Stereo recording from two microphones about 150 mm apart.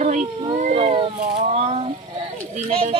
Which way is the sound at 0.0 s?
50° right (ahead or behind).